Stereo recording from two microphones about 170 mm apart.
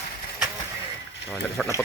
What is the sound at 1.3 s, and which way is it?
Speech, 15° left (ahead or behind).